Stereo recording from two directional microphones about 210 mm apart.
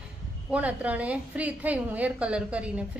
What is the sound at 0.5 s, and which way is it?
A woman's voice, 5° right (ahead or behind).